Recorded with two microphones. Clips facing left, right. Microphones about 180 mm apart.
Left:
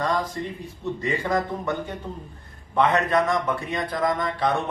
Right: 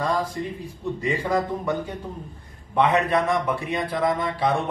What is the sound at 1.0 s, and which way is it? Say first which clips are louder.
A man's voice: right 1 dB; 10° right (ahead or behind).